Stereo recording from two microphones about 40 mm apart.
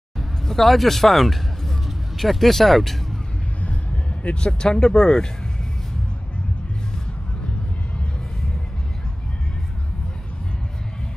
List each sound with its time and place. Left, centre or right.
0.5 s speech: centre
3.6 s vehicle: left
4.5 s speech: centre